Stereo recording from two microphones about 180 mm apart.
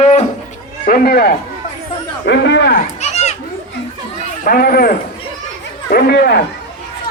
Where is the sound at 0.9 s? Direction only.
60° left (ahead or behind).